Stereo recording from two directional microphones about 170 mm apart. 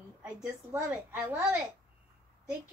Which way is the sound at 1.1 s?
5° right (ahead or behind).